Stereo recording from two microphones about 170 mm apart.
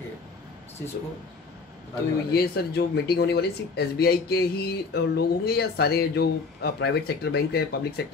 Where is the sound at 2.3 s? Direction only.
65° left (ahead or behind).